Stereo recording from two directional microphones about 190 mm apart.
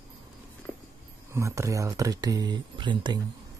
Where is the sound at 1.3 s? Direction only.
15° right (ahead or behind).